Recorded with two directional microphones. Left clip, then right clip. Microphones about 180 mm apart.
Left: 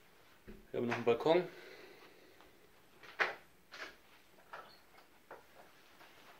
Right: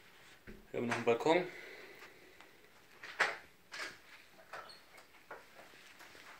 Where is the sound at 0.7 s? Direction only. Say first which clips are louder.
Even; 10° left (ahead or behind).